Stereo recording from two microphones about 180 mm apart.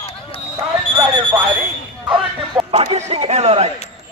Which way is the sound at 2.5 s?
30° right (ahead or behind).